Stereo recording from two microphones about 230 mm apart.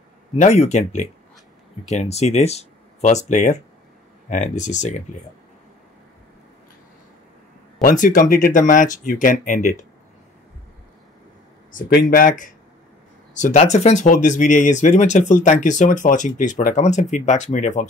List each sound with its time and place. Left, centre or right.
0.4 s speech: left
7.8 s speech: left
11.7 s speech: left